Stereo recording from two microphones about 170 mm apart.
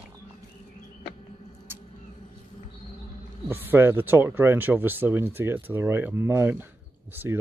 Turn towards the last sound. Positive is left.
turn(degrees=-10)  # may be behind; listen again after turning